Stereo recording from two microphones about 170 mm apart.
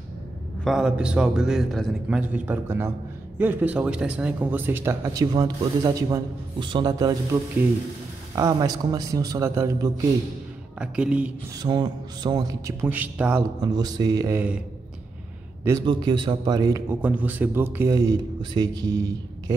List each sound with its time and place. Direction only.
0.7 s a man's voice: 5° right (ahead or behind); by 7.2 s 20° right (ahead or behind)
8.4 s speech: 20° right (ahead or behind)
10.8 s speech: 5° right (ahead or behind)
11.6 s speech: 25° right (ahead or behind)
12.8 s speech: 10° right (ahead or behind)
13.6 s speech: 25° right (ahead or behind)
15.8 s speech: 25° right (ahead or behind)
17.0 s speech: 10° right (ahead or behind)